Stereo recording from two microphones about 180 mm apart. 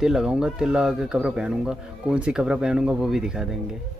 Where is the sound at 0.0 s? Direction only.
5° right (ahead or behind).